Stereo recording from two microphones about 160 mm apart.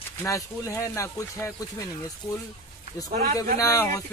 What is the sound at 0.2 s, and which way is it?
Speech, 20° left (ahead or behind).